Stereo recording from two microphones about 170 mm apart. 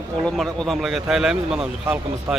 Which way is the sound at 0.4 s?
Centre (ahead or behind).